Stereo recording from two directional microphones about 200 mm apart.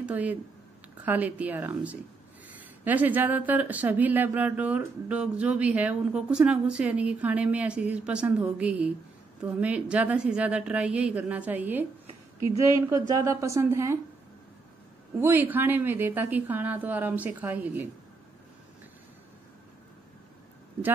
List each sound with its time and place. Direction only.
0.0 s speech: 5° right (ahead or behind)
15.1 s speech: 10° right (ahead or behind)